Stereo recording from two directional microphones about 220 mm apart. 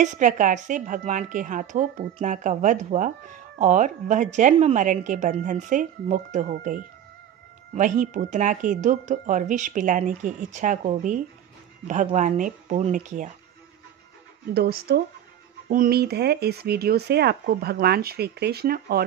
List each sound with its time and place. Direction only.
0.0 s speech: 35° right (ahead or behind)
14.5 s speech: 45° right (ahead or behind)